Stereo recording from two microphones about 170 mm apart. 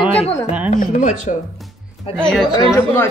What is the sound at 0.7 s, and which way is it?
Speech, 50° left (ahead or behind).